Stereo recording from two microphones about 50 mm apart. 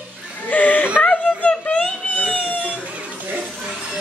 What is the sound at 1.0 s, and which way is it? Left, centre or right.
Dog, left.